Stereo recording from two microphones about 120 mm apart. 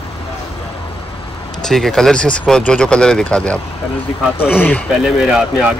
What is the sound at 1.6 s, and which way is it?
Speech, 5° left (ahead or behind).